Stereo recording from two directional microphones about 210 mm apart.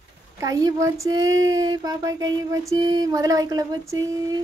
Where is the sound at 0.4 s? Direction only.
15° right (ahead or behind).